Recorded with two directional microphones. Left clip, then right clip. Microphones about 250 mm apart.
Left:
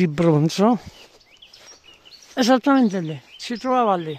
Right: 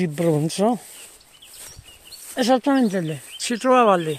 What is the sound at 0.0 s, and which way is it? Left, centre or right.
Speech, left.